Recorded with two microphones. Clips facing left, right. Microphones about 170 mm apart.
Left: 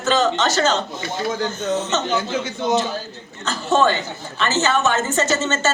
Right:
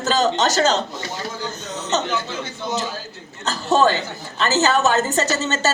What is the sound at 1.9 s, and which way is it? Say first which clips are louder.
Speech: even; 40° right (ahead or behind).